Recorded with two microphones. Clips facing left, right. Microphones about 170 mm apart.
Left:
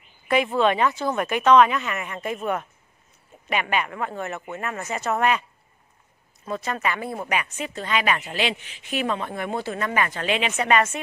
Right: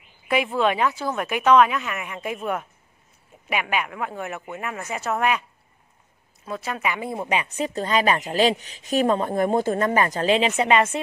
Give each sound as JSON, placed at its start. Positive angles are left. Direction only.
{"t": 0.6, "sound": "a woman's voice", "side_deg": -5}
{"t": 6.4, "sound": "a woman's voice", "side_deg": -5}
{"t": 7.6, "sound": "a woman's voice", "side_deg": -40}